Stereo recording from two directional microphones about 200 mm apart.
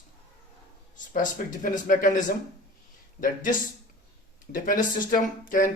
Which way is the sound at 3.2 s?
45° left (ahead or behind).